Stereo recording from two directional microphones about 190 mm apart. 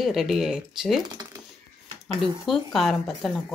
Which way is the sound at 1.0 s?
20° right (ahead or behind).